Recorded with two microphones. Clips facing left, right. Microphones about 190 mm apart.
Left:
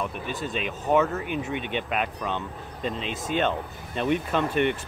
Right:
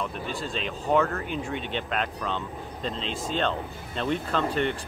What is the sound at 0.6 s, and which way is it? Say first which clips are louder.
Speech: left 1 dB; 20° left (ahead or behind).